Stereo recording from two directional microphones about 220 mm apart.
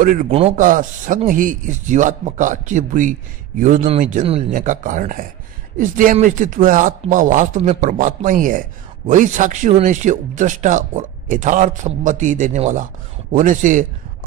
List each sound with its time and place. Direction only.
0.0 s speech: 40° right (ahead or behind)